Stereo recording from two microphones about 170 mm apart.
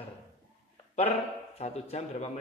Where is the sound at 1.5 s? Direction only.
40° left (ahead or behind).